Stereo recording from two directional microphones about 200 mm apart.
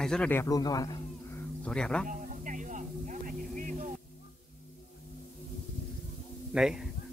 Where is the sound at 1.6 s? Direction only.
5° left (ahead or behind).